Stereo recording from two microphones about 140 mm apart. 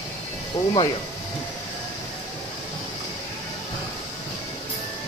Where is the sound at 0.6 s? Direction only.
25° left (ahead or behind).